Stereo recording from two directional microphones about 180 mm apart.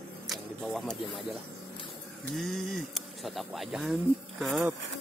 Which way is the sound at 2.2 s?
Centre (ahead or behind).